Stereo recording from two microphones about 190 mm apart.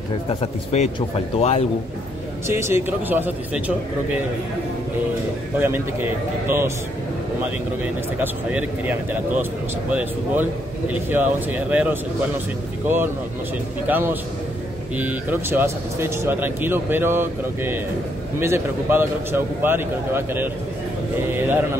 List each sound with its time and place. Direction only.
0.3 s speech: 30° left (ahead or behind)
2.4 s speech: 15° right (ahead or behind)
6.4 s speech: 15° right (ahead or behind)
8.2 s speech: 10° right (ahead or behind)